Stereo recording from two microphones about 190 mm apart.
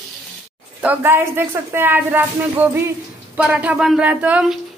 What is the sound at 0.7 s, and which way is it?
A woman's voice, 10° right (ahead or behind).